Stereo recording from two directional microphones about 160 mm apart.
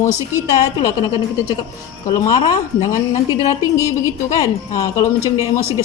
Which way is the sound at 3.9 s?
20° left (ahead or behind).